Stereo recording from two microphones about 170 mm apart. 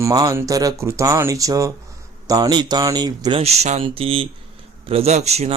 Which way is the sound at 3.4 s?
40° right (ahead or behind).